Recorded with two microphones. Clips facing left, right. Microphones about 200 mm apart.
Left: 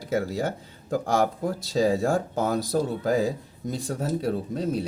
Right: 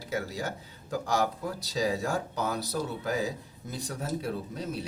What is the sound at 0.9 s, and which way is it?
Speech, 50° left (ahead or behind).